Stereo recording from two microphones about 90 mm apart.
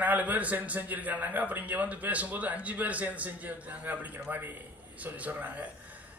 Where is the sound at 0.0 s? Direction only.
20° right (ahead or behind).